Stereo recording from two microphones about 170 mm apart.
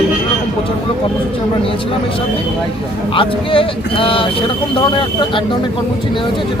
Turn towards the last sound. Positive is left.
turn(degrees=30)  # may be behind; listen again after turning